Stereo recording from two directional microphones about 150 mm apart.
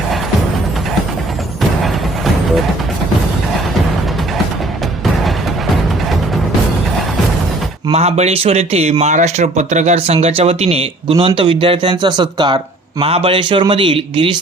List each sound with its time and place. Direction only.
1.8 s music: centre (ahead or behind)
7.9 s speech: 45° right (ahead or behind); by 12.5 s 30° right (ahead or behind)
13.0 s a man's voice: 40° right (ahead or behind)